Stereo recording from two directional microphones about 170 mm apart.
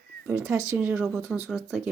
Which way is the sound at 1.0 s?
Centre (ahead or behind).